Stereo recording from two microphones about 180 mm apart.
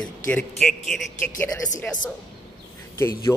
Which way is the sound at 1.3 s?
50° left (ahead or behind).